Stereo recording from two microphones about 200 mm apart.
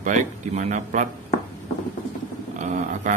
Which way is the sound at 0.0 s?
35° right (ahead or behind).